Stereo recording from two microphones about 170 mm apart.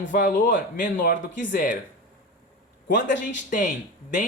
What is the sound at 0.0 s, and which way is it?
Speech, 90° left.